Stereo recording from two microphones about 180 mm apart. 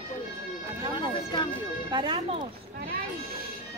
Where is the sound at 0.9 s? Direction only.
25° left (ahead or behind).